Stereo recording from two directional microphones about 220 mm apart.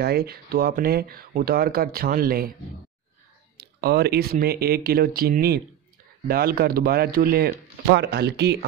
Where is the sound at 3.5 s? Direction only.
45° right (ahead or behind).